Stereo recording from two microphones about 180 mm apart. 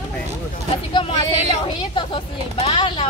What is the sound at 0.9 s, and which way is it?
A woman's voice, 30° left (ahead or behind).